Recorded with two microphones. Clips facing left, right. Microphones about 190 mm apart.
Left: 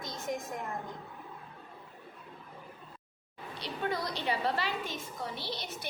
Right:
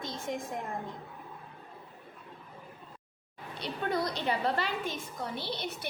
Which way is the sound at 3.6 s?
50° right (ahead or behind).